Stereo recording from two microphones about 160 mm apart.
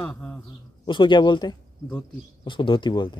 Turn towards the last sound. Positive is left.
turn(degrees=30)  # may be behind; listen again after turning